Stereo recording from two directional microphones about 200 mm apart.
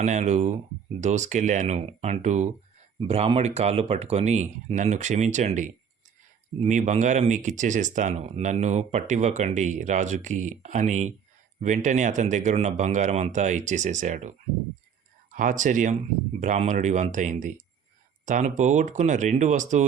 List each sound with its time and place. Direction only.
0.0 s speech: 35° right (ahead or behind)